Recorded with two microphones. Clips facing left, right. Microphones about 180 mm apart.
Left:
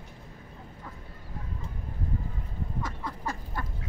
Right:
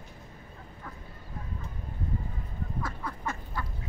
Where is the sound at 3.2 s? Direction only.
35° left (ahead or behind).